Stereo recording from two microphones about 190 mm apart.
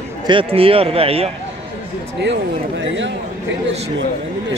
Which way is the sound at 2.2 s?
70° right (ahead or behind).